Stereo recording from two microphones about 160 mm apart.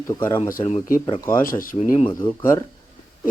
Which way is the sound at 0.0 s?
20° left (ahead or behind).